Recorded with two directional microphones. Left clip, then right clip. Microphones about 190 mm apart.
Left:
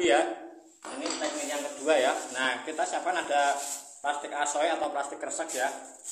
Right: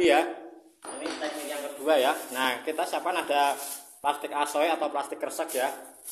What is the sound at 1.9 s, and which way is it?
Speech, 25° right (ahead or behind).